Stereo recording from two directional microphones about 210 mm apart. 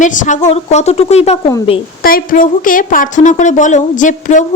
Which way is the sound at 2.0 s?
40° left (ahead or behind).